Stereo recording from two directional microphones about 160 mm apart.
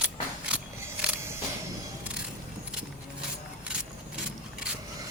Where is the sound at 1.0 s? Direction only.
15° right (ahead or behind).